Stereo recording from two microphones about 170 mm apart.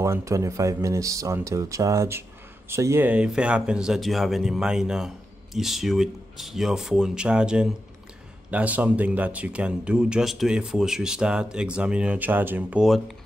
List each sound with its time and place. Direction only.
0.0 s speech: 15° right (ahead or behind)